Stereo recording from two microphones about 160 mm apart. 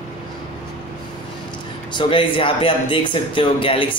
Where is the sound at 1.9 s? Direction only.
30° left (ahead or behind).